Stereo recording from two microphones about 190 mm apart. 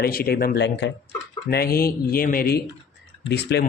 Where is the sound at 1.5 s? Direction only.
55° left (ahead or behind).